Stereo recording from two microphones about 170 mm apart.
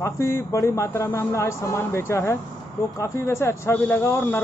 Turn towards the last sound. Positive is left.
turn(degrees=10)  # may be behind; listen again after turning